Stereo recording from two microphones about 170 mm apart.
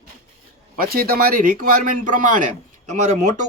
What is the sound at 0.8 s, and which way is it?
Speech, 60° right (ahead or behind).